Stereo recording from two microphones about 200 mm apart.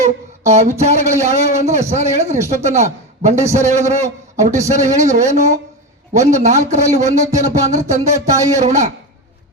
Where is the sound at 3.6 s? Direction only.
35° right (ahead or behind).